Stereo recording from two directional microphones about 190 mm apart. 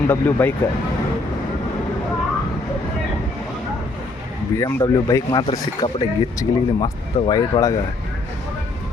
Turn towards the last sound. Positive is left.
turn(degrees=20)  # may be behind; listen again after turning